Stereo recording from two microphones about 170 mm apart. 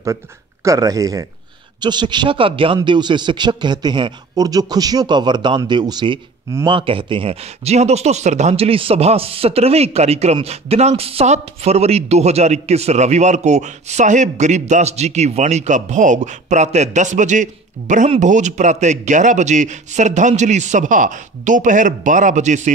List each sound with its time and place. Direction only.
0.7 s a man's voice: 20° right (ahead or behind); by 22.7 s 45° right (ahead or behind)